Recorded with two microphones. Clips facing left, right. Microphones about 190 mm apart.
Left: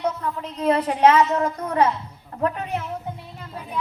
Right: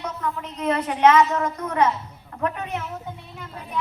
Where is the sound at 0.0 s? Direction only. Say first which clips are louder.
Left 3 dB; 30° left (ahead or behind).